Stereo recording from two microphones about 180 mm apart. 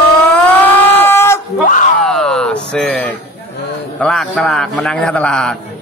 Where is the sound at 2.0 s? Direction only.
Centre (ahead or behind).